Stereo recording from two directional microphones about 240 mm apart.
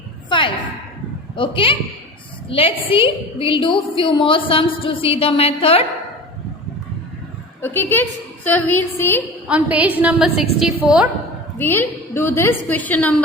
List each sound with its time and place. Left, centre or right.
0.3 s a sound: left
1.4 s a woman's voice: left
7.6 s a woman's voice: centre
9.5 s a woman's voice: centre
11.5 s a woman's voice: centre